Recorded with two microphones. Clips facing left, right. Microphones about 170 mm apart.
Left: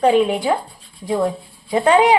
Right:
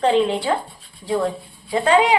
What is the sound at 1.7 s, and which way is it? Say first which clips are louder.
Speech: left 3 dB; 20° left (ahead or behind).